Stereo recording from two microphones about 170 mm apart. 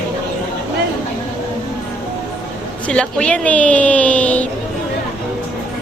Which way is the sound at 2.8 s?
5° left (ahead or behind).